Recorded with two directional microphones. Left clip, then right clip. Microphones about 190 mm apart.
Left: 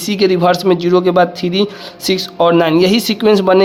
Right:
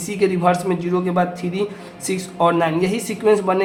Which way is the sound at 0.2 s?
50° left (ahead or behind).